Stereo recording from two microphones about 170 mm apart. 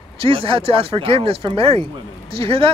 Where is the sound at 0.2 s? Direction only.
30° right (ahead or behind).